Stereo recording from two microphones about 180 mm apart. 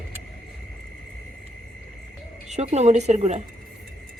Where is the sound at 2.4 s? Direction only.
40° right (ahead or behind).